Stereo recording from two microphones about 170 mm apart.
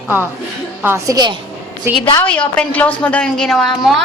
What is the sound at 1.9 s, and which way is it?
Speech, 15° right (ahead or behind).